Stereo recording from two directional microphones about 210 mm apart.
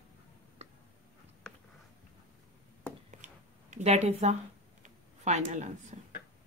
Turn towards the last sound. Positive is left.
turn(degrees=-35)  # may be behind; listen again after turning